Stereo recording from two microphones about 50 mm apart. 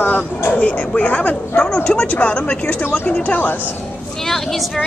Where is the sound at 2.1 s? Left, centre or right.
Left.